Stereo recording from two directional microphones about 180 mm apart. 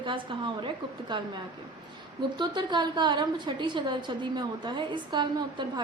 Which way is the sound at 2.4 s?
25° right (ahead or behind).